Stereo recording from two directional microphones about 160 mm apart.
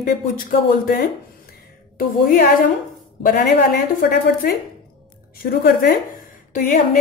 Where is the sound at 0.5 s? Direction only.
65° left (ahead or behind).